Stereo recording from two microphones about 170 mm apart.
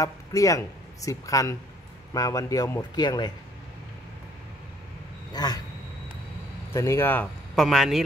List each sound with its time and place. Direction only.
0.0 s speech: 20° left (ahead or behind)
5.3 s speech: 25° left (ahead or behind)
6.7 s speech: 15° left (ahead or behind)
7.5 s speech: centre (ahead or behind)